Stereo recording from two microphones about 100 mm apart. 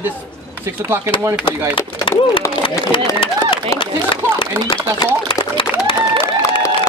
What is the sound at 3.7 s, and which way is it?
Speech, 60° left (ahead or behind).